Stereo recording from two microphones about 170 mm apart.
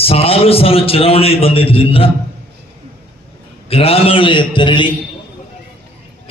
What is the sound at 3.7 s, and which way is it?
A man's voice, 35° left (ahead or behind).